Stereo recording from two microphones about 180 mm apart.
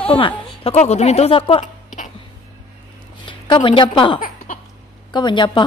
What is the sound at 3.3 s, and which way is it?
A woman's voice, 30° left (ahead or behind).